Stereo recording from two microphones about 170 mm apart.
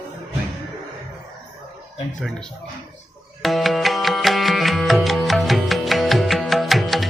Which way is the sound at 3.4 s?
Centre (ahead or behind).